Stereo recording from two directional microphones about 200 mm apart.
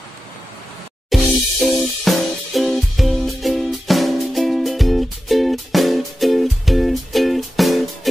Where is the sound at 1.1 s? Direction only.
Centre (ahead or behind).